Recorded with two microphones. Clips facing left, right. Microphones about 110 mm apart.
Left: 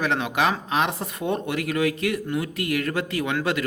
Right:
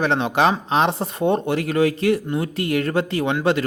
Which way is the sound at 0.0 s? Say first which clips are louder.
Right 5 dB; 30° right (ahead or behind).